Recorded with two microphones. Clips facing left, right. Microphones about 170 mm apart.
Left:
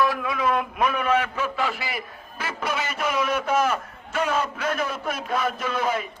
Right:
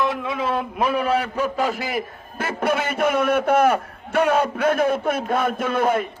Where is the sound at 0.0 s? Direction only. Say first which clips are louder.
Even; 25° right (ahead or behind); by 6.1 s 55° right (ahead or behind).